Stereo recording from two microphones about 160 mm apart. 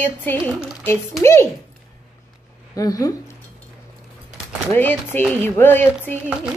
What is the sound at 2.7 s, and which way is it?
Speech, 20° left (ahead or behind).